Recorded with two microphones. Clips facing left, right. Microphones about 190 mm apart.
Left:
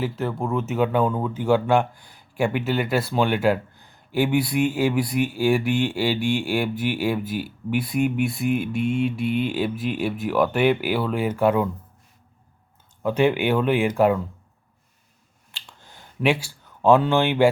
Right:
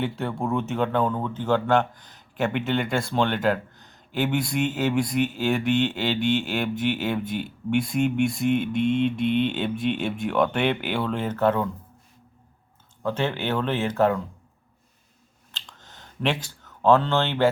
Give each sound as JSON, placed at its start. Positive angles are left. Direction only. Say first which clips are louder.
{"t": 0.0, "sound": "speech", "louder": "left 1 dB", "side_deg": 0}
{"t": 13.0, "sound": "speech", "louder": "left 6 dB", "side_deg": 15}
{"t": 15.5, "sound": "a sound", "louder": "even", "side_deg": 10}